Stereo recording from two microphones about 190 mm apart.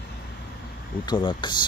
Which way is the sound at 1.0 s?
25° left (ahead or behind).